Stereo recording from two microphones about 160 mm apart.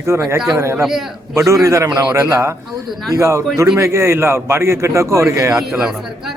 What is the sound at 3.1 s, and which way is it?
A man's voice, 20° right (ahead or behind).